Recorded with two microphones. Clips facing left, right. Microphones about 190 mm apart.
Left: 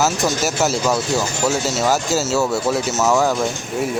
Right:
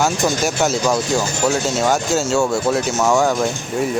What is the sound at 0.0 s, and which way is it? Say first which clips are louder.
Speech: right 1 dB; 5° left (ahead or behind).